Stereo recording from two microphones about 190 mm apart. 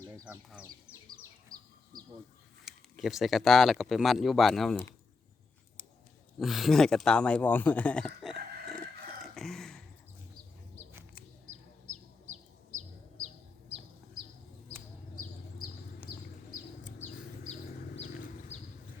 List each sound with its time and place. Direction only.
0.0 s bird: 15° right (ahead or behind)
1.5 s bird: 20° right (ahead or behind)
2.6 s speech: centre (ahead or behind)
6.4 s speech: centre (ahead or behind)
9.3 s a sound: centre (ahead or behind)
12.3 s bird: 40° right (ahead or behind)
15.2 s bird: 50° left (ahead or behind)